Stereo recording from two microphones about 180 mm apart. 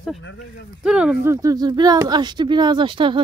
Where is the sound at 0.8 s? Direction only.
5° right (ahead or behind).